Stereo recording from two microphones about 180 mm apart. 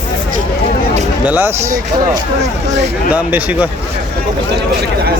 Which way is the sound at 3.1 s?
10° right (ahead or behind).